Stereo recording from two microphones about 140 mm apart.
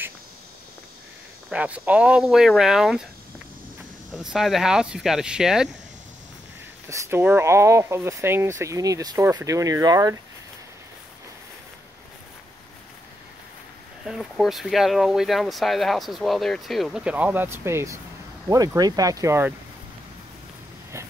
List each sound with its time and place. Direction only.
1.5 s speech: 10° right (ahead or behind)
4.1 s speech: centre (ahead or behind)
6.9 s speech: 20° right (ahead or behind)
14.0 s speech: 5° right (ahead or behind); by 19.5 s 20° right (ahead or behind)